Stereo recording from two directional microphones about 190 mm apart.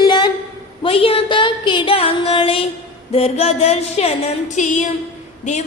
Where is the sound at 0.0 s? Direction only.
25° left (ahead or behind).